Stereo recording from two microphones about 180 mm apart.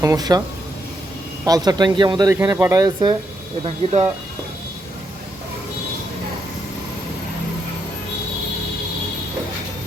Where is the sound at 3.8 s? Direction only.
35° right (ahead or behind).